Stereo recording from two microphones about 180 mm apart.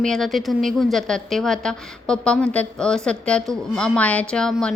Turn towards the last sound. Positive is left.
turn(degrees=5)  # may be behind; listen again after turning